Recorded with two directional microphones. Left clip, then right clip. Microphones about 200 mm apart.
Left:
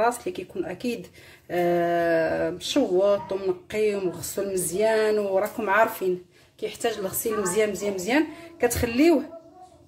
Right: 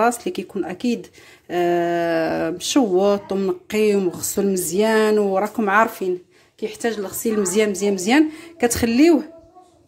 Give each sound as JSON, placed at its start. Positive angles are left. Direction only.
{"t": 0.0, "sound": "a woman's voice", "side_deg": -45}
{"t": 1.5, "sound": "a sound", "side_deg": -40}
{"t": 6.6, "sound": "a woman's voice", "side_deg": -35}